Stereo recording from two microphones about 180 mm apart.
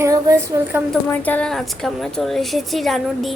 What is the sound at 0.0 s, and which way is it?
Speech, 15° right (ahead or behind).